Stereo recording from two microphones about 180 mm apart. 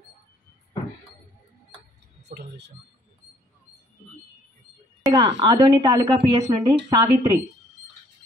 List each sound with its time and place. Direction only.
2.3 s speech: 70° right (ahead or behind)
5.1 s a woman's voice: 20° right (ahead or behind)